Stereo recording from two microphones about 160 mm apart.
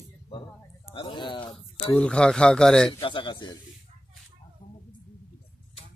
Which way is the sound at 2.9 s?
30° left (ahead or behind).